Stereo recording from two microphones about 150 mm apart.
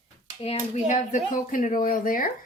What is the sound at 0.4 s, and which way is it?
Speech, 50° left (ahead or behind).